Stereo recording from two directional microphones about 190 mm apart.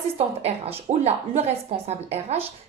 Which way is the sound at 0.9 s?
35° right (ahead or behind).